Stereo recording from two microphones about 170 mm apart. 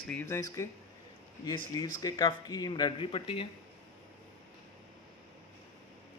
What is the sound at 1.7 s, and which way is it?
Speech, 25° left (ahead or behind).